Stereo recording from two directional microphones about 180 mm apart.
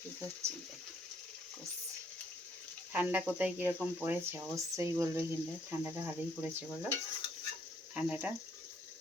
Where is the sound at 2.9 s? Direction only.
10° right (ahead or behind).